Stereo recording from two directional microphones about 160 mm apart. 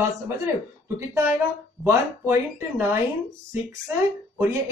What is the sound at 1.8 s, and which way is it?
Speech, 15° right (ahead or behind).